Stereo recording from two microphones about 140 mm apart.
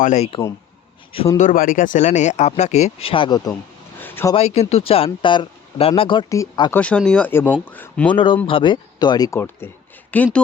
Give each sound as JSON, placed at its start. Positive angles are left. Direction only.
{"t": 0.0, "sound": "speech", "side_deg": 60}
{"t": 1.4, "sound": "speech", "side_deg": 75}
{"t": 3.9, "sound": "a sound", "side_deg": 15}
{"t": 4.4, "sound": "speech", "side_deg": 50}
{"t": 6.3, "sound": "speech", "side_deg": 20}
{"t": 6.7, "sound": "speech", "side_deg": 10}
{"t": 8.1, "sound": "speech", "side_deg": 35}
{"t": 9.6, "sound": "speech", "side_deg": 15}